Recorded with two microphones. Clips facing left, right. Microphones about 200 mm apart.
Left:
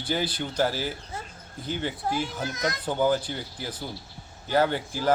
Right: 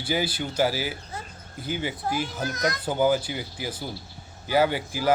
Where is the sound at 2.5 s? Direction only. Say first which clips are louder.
Right 2 dB; 25° left (ahead or behind).